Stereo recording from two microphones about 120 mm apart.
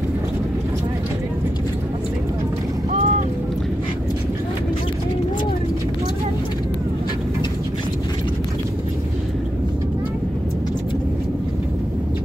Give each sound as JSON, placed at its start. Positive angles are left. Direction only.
{"t": 2.9, "sound": "vehicle", "side_deg": -75}